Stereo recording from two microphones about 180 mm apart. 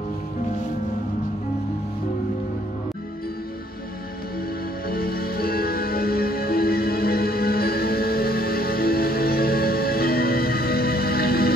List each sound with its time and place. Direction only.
4.8 s music: 55° left (ahead or behind)